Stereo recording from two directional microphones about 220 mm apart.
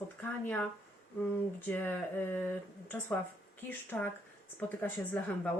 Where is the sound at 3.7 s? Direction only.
10° left (ahead or behind).